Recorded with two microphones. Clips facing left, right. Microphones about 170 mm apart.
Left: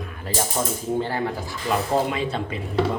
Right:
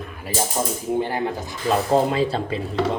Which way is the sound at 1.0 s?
15° right (ahead or behind).